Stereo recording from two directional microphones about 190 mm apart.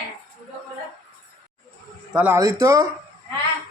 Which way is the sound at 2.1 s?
10° right (ahead or behind).